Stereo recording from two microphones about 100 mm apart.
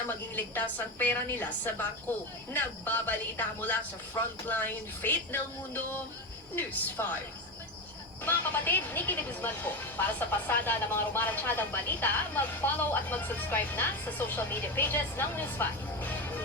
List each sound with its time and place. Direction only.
0.3 s speech: 15° left (ahead or behind)
7.0 s speech: 25° left (ahead or behind)
8.2 s speech: 20° left (ahead or behind)